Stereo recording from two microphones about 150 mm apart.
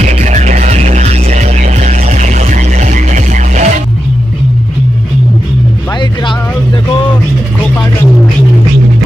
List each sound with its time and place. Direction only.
0.0 s music: 50° right (ahead or behind)